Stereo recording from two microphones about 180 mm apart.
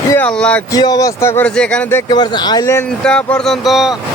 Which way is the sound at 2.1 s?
25° left (ahead or behind).